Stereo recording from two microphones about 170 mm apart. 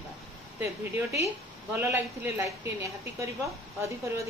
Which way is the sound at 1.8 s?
15° right (ahead or behind).